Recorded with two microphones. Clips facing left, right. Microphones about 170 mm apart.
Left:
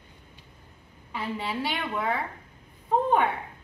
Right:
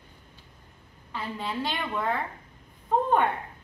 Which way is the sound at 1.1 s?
10° left (ahead or behind).